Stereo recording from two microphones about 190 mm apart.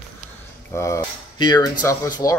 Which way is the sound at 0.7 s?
15° left (ahead or behind).